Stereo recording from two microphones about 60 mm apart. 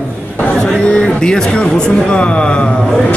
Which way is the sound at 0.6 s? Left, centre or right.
Centre.